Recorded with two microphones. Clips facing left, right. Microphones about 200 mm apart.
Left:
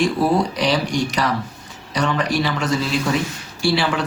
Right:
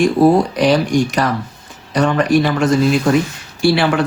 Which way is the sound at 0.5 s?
50° right (ahead or behind).